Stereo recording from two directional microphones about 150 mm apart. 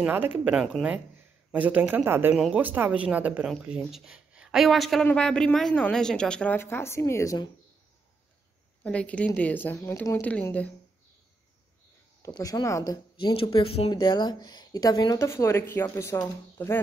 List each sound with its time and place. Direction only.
0.0 s a woman's voice: 10° right (ahead or behind); by 7.4 s 20° left (ahead or behind)
8.8 s a woman's voice: 10° left (ahead or behind)
12.3 s speech: 25° left (ahead or behind)
13.4 s speech: 35° left (ahead or behind)
13.9 s speech: 30° left (ahead or behind)